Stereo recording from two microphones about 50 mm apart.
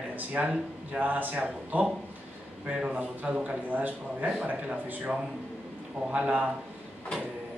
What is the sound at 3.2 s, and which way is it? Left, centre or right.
Speech, right.